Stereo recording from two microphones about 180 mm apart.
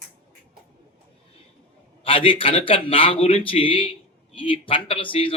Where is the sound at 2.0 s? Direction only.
30° left (ahead or behind).